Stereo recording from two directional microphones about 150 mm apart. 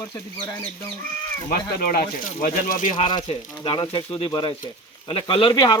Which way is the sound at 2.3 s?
65° left (ahead or behind).